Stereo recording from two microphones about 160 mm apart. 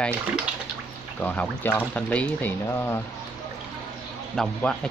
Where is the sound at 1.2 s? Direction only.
10° left (ahead or behind).